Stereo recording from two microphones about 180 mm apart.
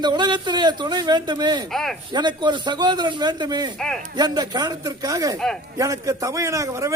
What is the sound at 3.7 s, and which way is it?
Speech, 5° left (ahead or behind).